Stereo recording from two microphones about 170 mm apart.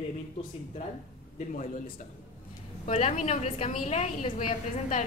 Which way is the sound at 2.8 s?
40° left (ahead or behind).